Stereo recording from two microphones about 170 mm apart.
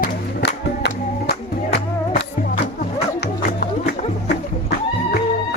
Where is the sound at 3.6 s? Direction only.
75° left (ahead or behind).